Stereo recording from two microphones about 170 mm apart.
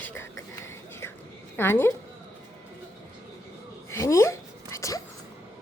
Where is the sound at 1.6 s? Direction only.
15° left (ahead or behind).